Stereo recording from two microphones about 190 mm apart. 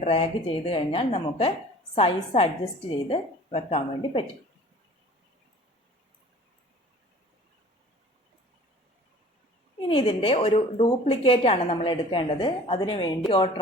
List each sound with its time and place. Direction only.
0.0 s a woman's voice: 30° left (ahead or behind)
9.9 s a woman's voice: 25° left (ahead or behind)